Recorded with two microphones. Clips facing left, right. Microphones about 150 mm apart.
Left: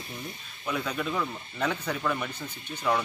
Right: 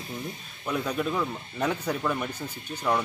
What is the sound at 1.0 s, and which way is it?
Speech, 10° right (ahead or behind).